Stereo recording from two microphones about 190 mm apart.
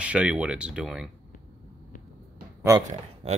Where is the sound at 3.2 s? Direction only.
35° right (ahead or behind).